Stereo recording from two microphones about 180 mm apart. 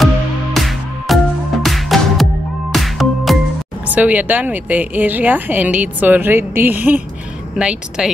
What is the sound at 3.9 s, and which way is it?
A woman's voice, 10° right (ahead or behind).